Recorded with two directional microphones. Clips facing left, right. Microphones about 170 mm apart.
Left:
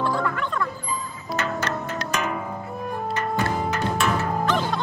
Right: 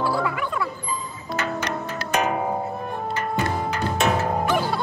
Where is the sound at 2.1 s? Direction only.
60° right (ahead or behind).